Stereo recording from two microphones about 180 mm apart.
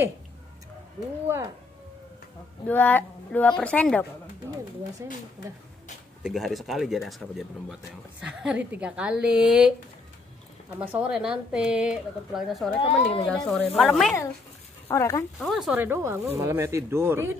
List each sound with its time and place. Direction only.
1.2 s speech: 15° right (ahead or behind)
2.6 s a woman's voice: 10° left (ahead or behind)
6.2 s speech: centre (ahead or behind)
10.8 s speech: 5° right (ahead or behind)
12.8 s speech: 30° left (ahead or behind)
13.7 s speech: centre (ahead or behind)
14.9 s a woman's voice: 15° left (ahead or behind)
15.3 s speech: centre (ahead or behind)